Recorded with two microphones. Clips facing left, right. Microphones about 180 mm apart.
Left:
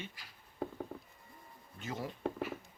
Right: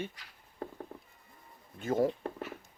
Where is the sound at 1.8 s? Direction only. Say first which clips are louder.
Right 12 dB; 50° right (ahead or behind).